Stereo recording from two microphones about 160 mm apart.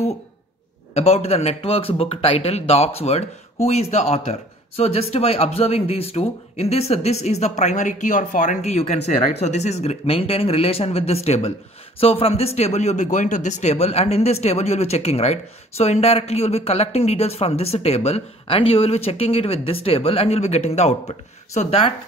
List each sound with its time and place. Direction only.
0.9 s speech: 40° left (ahead or behind)